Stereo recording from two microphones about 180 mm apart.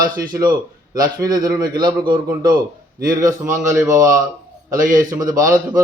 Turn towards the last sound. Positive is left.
turn(degrees=-20)  # may be behind; listen again after turning